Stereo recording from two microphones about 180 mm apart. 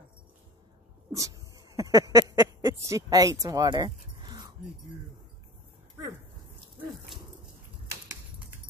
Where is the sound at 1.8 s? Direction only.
20° right (ahead or behind).